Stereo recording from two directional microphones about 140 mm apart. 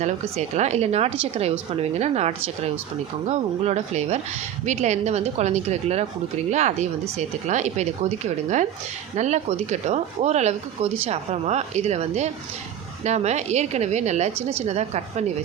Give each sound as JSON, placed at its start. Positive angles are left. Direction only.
{"t": 0.0, "sound": "speech", "side_deg": -55}